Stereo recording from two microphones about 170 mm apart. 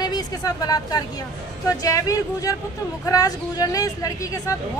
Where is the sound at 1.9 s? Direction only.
20° left (ahead or behind).